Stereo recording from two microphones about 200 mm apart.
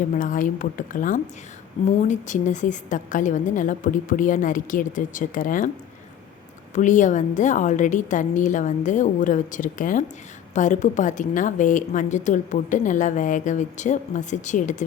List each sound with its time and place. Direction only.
0.1 s a woman's voice: 40° left (ahead or behind)
6.7 s a woman's voice: 40° left (ahead or behind)